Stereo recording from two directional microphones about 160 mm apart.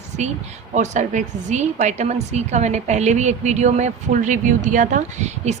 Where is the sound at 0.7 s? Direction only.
50° right (ahead or behind).